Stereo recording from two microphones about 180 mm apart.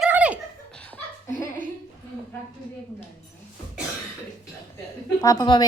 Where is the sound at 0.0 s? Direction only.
5° right (ahead or behind).